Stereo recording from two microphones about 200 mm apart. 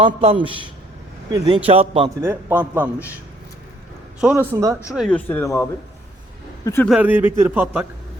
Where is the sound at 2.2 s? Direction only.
10° right (ahead or behind).